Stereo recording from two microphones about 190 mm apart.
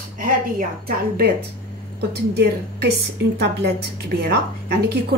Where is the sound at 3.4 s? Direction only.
60° right (ahead or behind).